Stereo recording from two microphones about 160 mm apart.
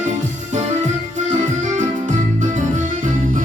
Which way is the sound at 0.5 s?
50° right (ahead or behind).